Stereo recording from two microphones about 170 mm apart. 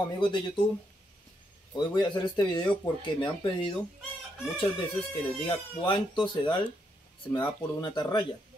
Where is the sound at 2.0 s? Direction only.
25° left (ahead or behind).